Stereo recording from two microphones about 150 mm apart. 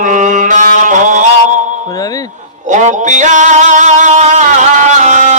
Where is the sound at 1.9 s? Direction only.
25° left (ahead or behind).